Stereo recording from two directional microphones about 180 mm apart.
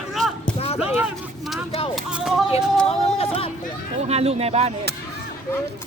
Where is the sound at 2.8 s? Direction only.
35° left (ahead or behind).